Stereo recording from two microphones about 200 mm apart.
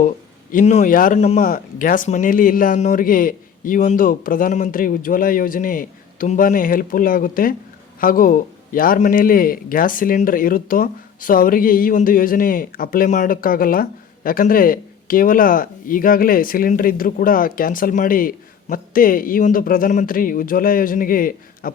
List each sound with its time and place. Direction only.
0.5 s speech: 35° left (ahead or behind)
1.4 s speech: 45° left (ahead or behind)